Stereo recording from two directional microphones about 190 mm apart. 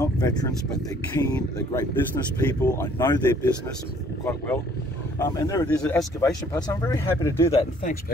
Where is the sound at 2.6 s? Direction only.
15° left (ahead or behind).